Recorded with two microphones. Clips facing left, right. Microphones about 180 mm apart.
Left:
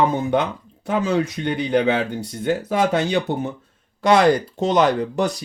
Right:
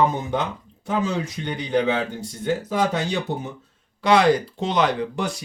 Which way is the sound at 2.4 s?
65° left (ahead or behind).